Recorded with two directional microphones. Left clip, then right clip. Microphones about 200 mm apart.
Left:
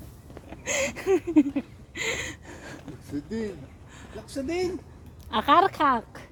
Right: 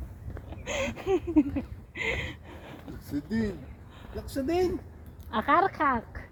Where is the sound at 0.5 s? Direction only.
40° left (ahead or behind).